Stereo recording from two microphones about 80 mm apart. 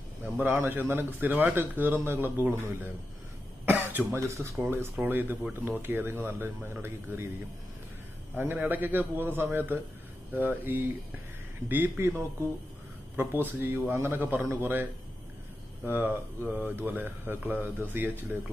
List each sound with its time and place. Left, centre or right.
0.2 s a man's voice: right
3.6 s cough: right
4.2 s a man's voice: right
8.4 s a man's voice: right